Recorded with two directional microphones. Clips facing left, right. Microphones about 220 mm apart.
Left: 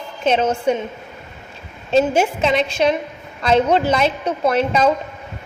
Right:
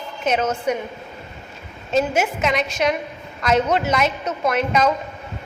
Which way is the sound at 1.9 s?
30° left (ahead or behind).